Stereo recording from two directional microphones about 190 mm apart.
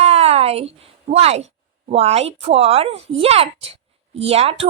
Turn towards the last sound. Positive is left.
turn(degrees=-30)  # may be behind; listen again after turning